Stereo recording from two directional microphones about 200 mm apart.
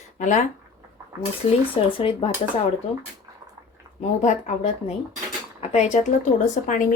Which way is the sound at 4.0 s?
35° left (ahead or behind).